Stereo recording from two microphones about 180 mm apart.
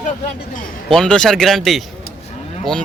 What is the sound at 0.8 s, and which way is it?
Speech, 5° left (ahead or behind).